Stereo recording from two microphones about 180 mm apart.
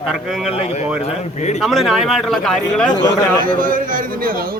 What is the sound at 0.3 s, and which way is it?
Speech, centre (ahead or behind).